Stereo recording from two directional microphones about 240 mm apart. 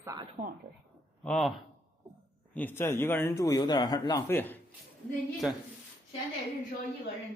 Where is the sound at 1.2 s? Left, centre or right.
Centre.